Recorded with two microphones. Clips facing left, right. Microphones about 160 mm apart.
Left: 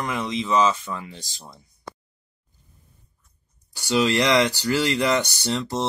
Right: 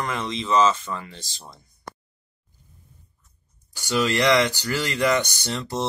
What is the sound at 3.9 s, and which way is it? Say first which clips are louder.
Speech: left 1 dB; 20° left (ahead or behind).